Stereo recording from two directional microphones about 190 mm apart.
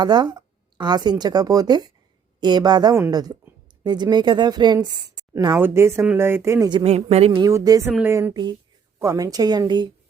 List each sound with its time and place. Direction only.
0.0 s a woman's voice: 20° right (ahead or behind)